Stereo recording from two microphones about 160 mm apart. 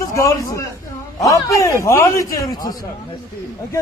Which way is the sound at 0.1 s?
20° left (ahead or behind).